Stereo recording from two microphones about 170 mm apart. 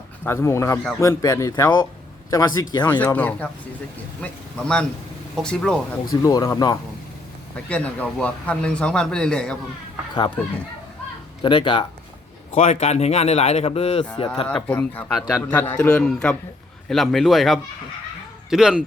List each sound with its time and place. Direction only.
0.3 s a man's voice: 15° left (ahead or behind)
3.0 s a man's voice: 10° left (ahead or behind)
6.1 s speech: 20° left (ahead or behind)
7.5 s a man's voice: 5° left (ahead or behind)
11.4 s speech: 30° left (ahead or behind)
14.4 s a man's voice: 5° left (ahead or behind)